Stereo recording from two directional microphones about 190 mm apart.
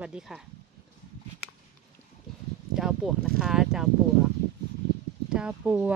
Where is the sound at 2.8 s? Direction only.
Centre (ahead or behind).